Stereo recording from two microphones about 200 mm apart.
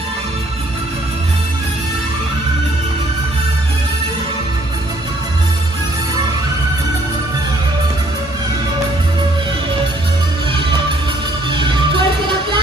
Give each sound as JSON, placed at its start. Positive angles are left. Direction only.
{"t": 11.5, "sound": "music", "side_deg": -25}